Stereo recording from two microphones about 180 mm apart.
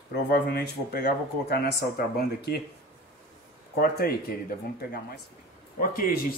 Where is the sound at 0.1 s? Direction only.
60° left (ahead or behind).